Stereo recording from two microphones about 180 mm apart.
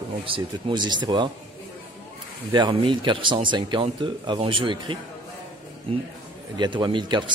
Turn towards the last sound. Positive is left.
turn(degrees=-25)  # may be behind; listen again after turning